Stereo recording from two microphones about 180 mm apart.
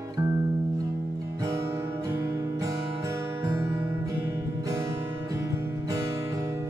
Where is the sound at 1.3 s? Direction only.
15° right (ahead or behind).